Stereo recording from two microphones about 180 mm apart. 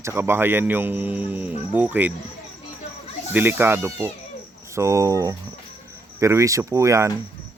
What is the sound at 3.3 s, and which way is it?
Speech, 10° right (ahead or behind).